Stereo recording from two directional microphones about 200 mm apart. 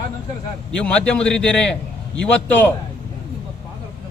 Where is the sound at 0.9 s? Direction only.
5° left (ahead or behind).